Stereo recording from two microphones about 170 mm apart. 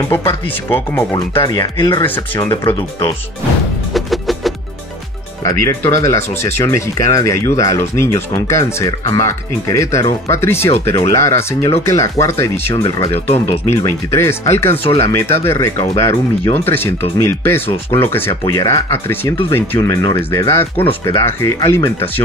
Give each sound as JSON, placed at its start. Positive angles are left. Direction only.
{"t": 0.7, "sound": "speech", "side_deg": 15}
{"t": 1.4, "sound": "speech", "side_deg": 25}
{"t": 3.9, "sound": "music", "side_deg": 0}
{"t": 5.4, "sound": "speech", "side_deg": 15}